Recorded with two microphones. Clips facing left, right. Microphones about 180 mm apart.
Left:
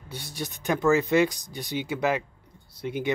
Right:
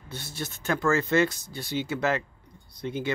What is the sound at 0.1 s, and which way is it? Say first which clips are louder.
Speech: left 1 dB; 15° left (ahead or behind).